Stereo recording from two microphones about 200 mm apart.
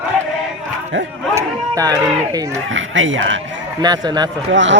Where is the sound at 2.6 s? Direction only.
70° right (ahead or behind).